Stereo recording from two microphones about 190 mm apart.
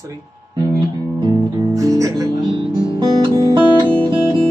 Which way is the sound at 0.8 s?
20° right (ahead or behind).